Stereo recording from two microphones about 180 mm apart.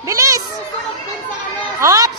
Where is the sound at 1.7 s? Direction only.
20° right (ahead or behind).